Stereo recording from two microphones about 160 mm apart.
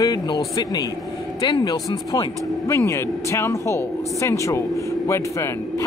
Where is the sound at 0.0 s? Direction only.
25° left (ahead or behind).